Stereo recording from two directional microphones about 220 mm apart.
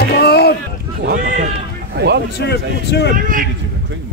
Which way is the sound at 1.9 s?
50° right (ahead or behind).